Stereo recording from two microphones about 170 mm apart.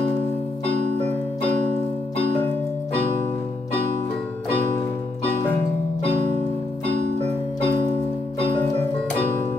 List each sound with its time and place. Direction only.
0.7 s keyboard: 45° right (ahead or behind)
6.1 s music: 45° right (ahead or behind)
7.0 s keyboard: 45° right (ahead or behind)